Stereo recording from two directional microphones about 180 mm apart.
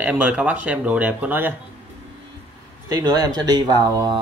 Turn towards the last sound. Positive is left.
turn(degrees=-25)  # may be behind; listen again after turning